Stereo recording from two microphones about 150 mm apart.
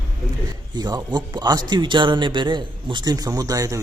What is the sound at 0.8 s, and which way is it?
A man's voice, 30° right (ahead or behind).